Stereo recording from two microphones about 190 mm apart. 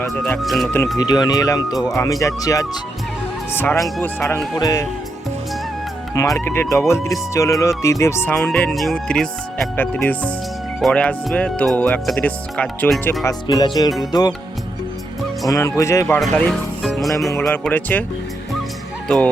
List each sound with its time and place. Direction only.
0.4 s speech: centre (ahead or behind)
0.9 s speech: 20° left (ahead or behind)
3.8 s speech: centre (ahead or behind)
4.5 s speech: 20° left (ahead or behind)
6.3 s speech: 10° left (ahead or behind)
13.2 s speech: 20° left (ahead or behind)
15.4 s speech: 15° left (ahead or behind)
16.2 s speech: centre (ahead or behind)
19.0 s speech: 5° left (ahead or behind)